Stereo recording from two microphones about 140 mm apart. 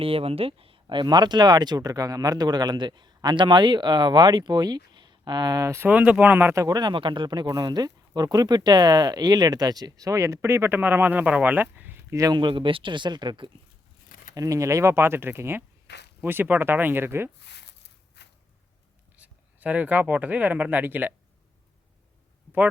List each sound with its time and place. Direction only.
0.0 s speech: 40° right (ahead or behind); by 5.9 s 20° right (ahead or behind)
5.9 s speech: 10° right (ahead or behind)
19.1 s speech: 10° right (ahead or behind)